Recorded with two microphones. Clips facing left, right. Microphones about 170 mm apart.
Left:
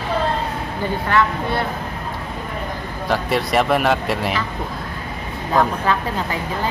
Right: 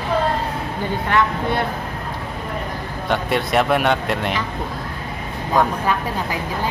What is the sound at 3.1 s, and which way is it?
Speech, centre (ahead or behind).